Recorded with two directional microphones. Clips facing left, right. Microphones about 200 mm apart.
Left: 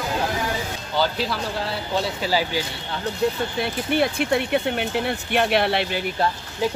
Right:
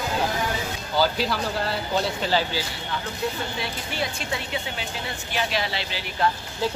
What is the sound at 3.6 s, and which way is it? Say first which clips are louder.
Speech: left 8 dB; 60° left (ahead or behind).